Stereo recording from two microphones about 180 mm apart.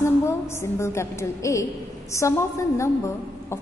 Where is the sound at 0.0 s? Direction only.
15° left (ahead or behind).